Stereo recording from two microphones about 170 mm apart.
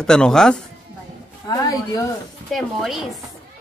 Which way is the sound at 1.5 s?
20° left (ahead or behind).